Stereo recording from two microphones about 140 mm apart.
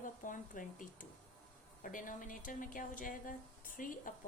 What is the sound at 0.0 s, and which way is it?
A woman's voice, 70° left (ahead or behind).